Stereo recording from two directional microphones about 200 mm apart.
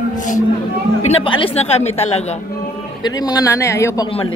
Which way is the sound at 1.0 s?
30° left (ahead or behind).